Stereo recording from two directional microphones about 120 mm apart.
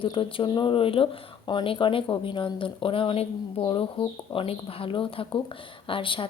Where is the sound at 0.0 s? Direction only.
45° left (ahead or behind).